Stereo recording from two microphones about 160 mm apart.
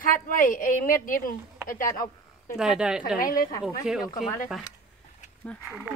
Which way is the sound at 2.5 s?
5° right (ahead or behind).